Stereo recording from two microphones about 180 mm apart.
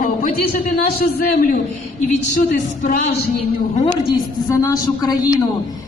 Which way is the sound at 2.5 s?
40° left (ahead or behind).